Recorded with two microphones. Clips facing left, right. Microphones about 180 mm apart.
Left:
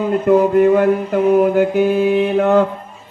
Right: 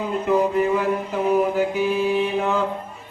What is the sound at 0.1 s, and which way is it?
Mantra, 55° left (ahead or behind).